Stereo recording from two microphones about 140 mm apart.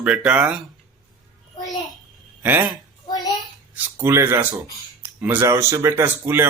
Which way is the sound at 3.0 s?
30° left (ahead or behind).